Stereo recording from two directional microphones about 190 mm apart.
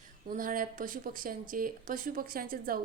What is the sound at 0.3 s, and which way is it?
A woman's voice, 45° right (ahead or behind).